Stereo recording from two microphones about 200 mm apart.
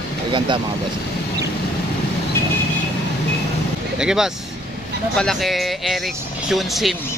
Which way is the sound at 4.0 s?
5° right (ahead or behind).